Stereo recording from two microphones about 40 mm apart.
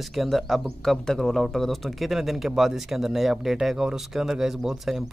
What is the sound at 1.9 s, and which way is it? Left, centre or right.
Speech, centre.